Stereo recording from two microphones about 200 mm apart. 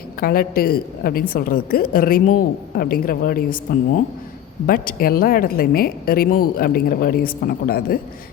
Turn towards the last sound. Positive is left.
turn(degrees=45)  # may be behind; listen again after turning